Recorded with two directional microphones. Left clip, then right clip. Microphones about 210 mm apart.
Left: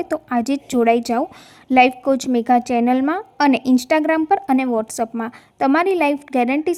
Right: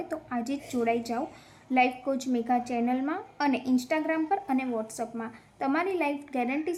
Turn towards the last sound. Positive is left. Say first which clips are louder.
# left 11 dB
turn(degrees=45)  # may be behind; listen again after turning